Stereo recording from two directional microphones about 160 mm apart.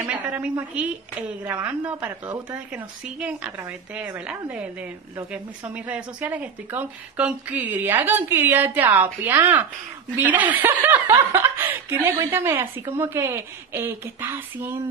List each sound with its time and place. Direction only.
0.0 s a woman's voice: 10° right (ahead or behind)